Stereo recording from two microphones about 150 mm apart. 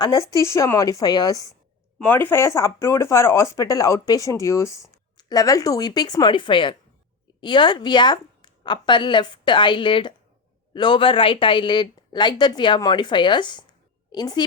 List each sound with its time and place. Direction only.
0.0 s speech: 25° left (ahead or behind)
2.0 s speech: 15° left (ahead or behind); by 14.4 s 30° left (ahead or behind)